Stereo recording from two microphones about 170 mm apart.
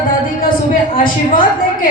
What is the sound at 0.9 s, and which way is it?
Speech, 55° left (ahead or behind).